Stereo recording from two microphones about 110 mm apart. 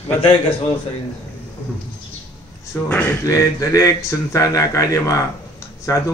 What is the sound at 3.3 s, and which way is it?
Speech, 30° left (ahead or behind).